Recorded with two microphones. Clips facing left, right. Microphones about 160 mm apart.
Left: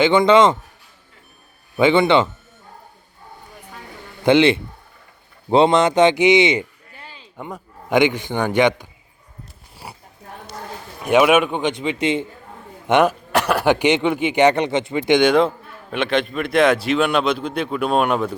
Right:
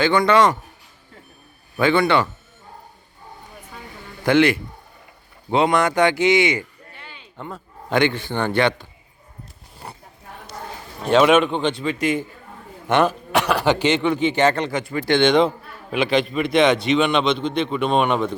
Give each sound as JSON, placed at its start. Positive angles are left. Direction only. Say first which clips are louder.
{"t": 0.0, "sound": "speech", "louder": "left 3 dB", "side_deg": 20}
{"t": 1.7, "sound": "speech", "louder": "left 3 dB", "side_deg": 20}
{"t": 4.2, "sound": "a man's voice", "louder": "left 2 dB", "side_deg": 20}
{"t": 6.9, "sound": "a sound", "louder": "left 2 dB", "side_deg": 35}
{"t": 7.3, "sound": "a man's voice", "louder": "left 2 dB", "side_deg": 15}
{"t": 11.0, "sound": "a man's voice", "louder": "even", "side_deg": 10}
{"t": 13.3, "sound": "a sound", "louder": "left 1 dB", "side_deg": 0}
{"t": 13.7, "sound": "speech", "louder": "left 2 dB", "side_deg": 15}